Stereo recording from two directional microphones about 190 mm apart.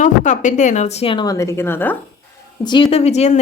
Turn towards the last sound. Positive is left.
turn(degrees=35)  # may be behind; listen again after turning